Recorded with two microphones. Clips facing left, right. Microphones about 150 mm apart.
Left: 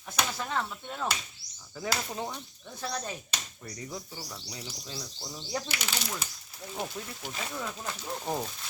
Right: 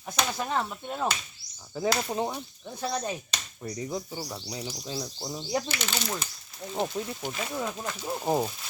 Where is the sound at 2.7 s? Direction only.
15° right (ahead or behind).